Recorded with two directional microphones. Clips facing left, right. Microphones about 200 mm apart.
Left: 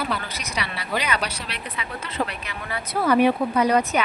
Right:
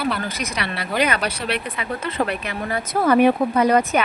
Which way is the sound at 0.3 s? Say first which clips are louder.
Right 4 dB; 50° right (ahead or behind).